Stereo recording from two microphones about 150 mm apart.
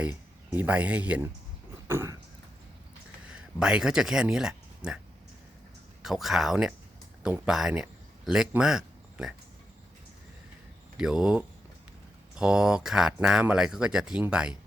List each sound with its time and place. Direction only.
0.0 s speech: 10° right (ahead or behind)
1.9 s a sound: 15° right (ahead or behind)
3.2 s speech: 5° right (ahead or behind)
6.0 s speech: centre (ahead or behind)
10.9 s speech: 5° right (ahead or behind)